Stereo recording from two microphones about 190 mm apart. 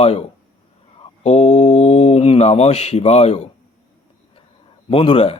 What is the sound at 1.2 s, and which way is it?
Mantra, 35° left (ahead or behind).